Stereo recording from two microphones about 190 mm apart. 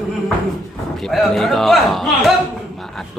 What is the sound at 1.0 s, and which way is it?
Speech, centre (ahead or behind).